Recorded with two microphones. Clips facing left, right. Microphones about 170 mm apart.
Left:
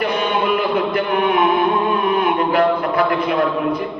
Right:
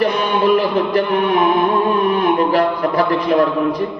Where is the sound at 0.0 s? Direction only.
40° right (ahead or behind).